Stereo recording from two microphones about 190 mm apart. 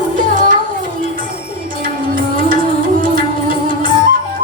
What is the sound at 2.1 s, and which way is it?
Music, 45° right (ahead or behind).